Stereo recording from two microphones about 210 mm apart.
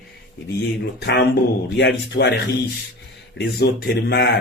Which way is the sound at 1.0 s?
55° left (ahead or behind).